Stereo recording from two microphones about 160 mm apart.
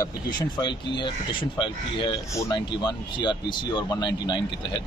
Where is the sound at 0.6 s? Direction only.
30° left (ahead or behind).